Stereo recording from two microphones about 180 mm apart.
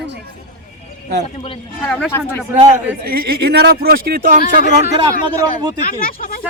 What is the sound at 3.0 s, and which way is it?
Speech, 60° right (ahead or behind).